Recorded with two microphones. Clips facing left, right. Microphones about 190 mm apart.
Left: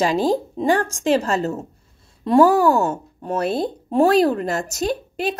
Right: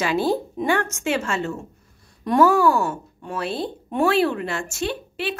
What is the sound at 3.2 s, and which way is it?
A woman's voice, 45° left (ahead or behind).